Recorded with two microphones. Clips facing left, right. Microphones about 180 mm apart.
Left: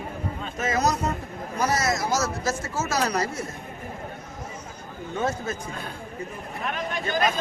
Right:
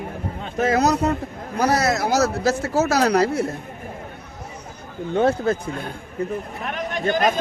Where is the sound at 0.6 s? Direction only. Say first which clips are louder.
Right 6 dB; 65° right (ahead or behind).